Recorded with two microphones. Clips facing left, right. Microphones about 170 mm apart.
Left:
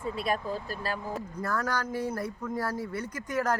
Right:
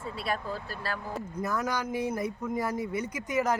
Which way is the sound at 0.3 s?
15° left (ahead or behind).